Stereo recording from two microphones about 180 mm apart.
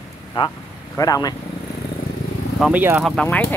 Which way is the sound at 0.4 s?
25° left (ahead or behind).